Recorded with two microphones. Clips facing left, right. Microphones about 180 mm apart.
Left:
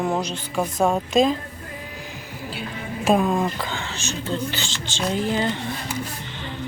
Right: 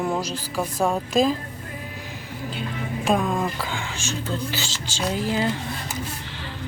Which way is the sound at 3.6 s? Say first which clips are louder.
Even; 10° right (ahead or behind).